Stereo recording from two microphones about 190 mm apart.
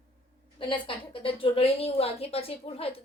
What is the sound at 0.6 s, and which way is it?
A woman's voice, 25° left (ahead or behind).